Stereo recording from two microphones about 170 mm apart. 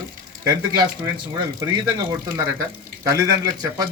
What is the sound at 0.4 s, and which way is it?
Speech, 25° right (ahead or behind).